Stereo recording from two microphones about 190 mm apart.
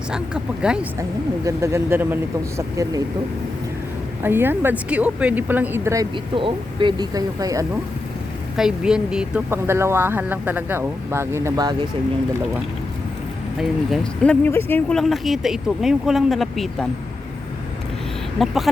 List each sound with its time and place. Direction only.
0.1 s speech: 5° right (ahead or behind)
1.5 s speech: 15° right (ahead or behind)
4.2 s speech: 10° right (ahead or behind)
8.5 s speech: 5° right (ahead or behind); by 11.8 s 20° right (ahead or behind)
13.6 s speech: centre (ahead or behind)
18.3 s speech: centre (ahead or behind)